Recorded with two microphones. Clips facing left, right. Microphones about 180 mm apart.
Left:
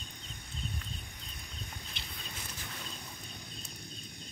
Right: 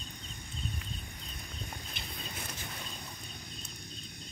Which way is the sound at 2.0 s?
50° right (ahead or behind).